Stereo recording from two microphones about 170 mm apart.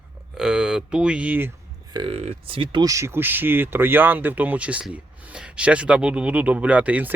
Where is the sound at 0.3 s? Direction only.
5° right (ahead or behind).